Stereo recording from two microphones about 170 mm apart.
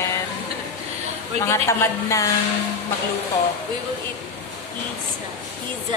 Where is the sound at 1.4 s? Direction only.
15° left (ahead or behind).